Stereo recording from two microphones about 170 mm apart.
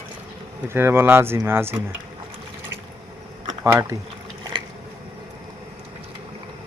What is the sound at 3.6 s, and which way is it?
Speech, 20° right (ahead or behind).